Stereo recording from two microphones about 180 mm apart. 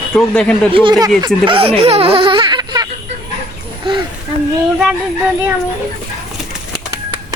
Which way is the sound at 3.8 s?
25° right (ahead or behind).